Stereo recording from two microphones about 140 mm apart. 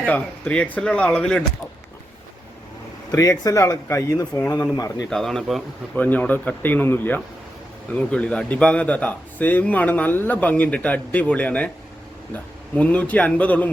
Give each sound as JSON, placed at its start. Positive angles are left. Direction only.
{"t": 0.0, "sound": "a man's voice", "side_deg": 10}
{"t": 3.1, "sound": "speech", "side_deg": 25}
{"t": 5.0, "sound": "a man's voice", "side_deg": 5}
{"t": 12.7, "sound": "a man's voice", "side_deg": 10}